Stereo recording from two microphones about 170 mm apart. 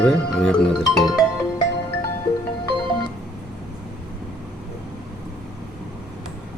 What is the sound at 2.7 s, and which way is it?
Music, 25° left (ahead or behind).